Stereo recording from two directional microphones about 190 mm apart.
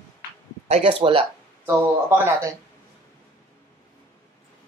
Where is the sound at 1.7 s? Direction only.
15° right (ahead or behind).